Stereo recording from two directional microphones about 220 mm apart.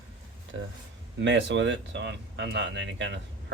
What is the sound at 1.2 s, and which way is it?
Speech, 55° right (ahead or behind).